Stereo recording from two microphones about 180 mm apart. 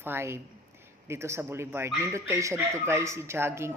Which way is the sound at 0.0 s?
15° right (ahead or behind).